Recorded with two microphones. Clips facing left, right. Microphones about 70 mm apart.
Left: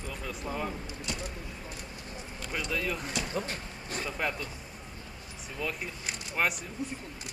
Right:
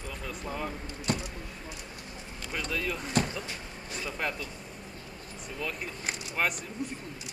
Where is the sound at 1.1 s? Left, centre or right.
Right.